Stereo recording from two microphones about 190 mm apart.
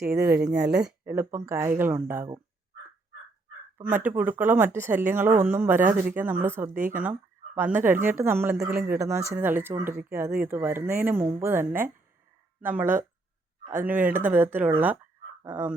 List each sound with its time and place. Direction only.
0.0 s speech: 10° right (ahead or behind)
3.8 s speech: 10° right (ahead or behind)